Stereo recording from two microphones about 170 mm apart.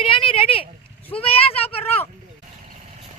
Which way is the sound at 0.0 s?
30° left (ahead or behind).